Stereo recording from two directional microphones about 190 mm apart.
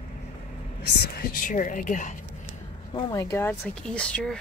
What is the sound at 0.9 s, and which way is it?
A woman's voice, 50° left (ahead or behind).